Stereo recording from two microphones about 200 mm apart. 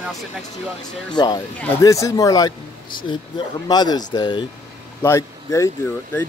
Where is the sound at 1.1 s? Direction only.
20° left (ahead or behind).